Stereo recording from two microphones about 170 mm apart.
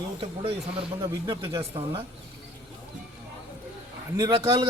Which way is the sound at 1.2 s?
20° right (ahead or behind).